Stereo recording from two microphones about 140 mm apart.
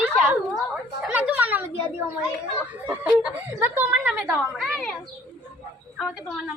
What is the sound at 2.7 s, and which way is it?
Speech, 10° right (ahead or behind).